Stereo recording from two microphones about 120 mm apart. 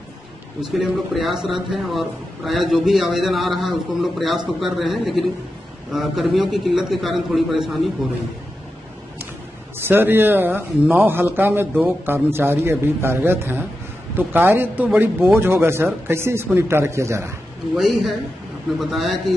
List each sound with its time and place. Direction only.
0.6 s a man's voice: 5° right (ahead or behind)
9.8 s a man's voice: 20° right (ahead or behind)
17.7 s a man's voice: centre (ahead or behind)